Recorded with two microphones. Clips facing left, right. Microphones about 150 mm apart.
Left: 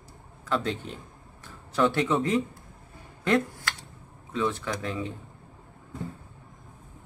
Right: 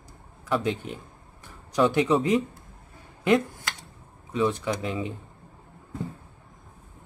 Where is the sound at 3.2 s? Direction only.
15° right (ahead or behind).